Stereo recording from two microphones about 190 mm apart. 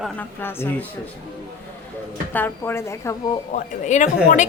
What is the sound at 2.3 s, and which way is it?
Speech, 10° left (ahead or behind).